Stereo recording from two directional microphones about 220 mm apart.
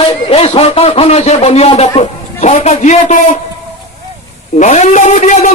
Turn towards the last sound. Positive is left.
turn(degrees=30)  # may be behind; listen again after turning